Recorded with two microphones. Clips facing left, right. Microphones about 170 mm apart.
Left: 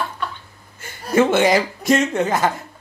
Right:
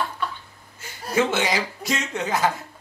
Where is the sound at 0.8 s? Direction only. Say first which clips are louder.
Left 6 dB; 55° left (ahead or behind).